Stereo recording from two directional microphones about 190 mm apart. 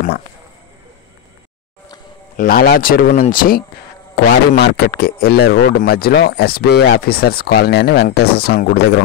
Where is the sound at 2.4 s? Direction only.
50° left (ahead or behind).